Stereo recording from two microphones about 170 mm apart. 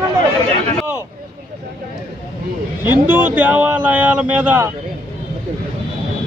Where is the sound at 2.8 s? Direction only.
10° right (ahead or behind).